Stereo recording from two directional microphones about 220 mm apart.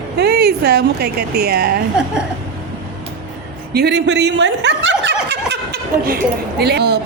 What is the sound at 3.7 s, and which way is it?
A woman's voice, 50° right (ahead or behind).